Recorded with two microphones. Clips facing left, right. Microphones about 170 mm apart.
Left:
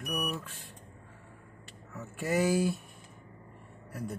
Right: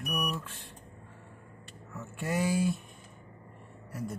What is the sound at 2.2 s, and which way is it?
Speech, 5° left (ahead or behind).